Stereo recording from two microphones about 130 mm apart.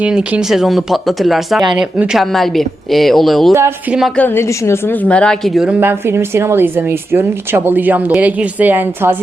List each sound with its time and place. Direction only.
0.0 s speech: 5° right (ahead or behind)
4.2 s a woman's voice: 20° left (ahead or behind)
5.6 s speech: 15° right (ahead or behind)